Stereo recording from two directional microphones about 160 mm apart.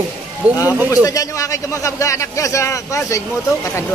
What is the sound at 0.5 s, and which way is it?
A man's voice, 20° left (ahead or behind).